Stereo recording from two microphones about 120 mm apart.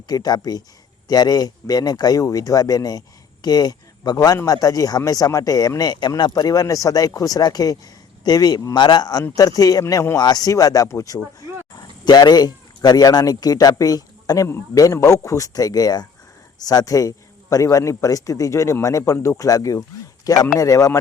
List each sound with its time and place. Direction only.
0.1 s a man's voice: 35° left (ahead or behind)
10.2 s a man's voice: 35° left (ahead or behind)